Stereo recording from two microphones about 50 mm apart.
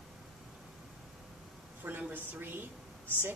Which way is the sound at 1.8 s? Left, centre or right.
Right.